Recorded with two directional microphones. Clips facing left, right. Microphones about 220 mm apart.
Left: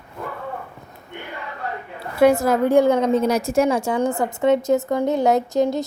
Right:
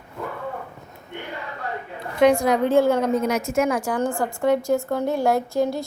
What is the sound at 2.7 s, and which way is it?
Speech, 15° left (ahead or behind).